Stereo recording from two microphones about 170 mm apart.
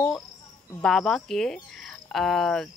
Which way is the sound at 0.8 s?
Centre (ahead or behind).